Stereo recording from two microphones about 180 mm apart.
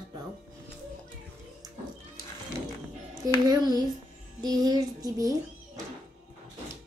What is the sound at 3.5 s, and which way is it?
A child's voice, 20° right (ahead or behind).